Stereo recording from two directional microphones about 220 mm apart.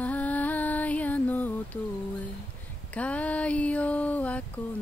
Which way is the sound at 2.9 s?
5° left (ahead or behind).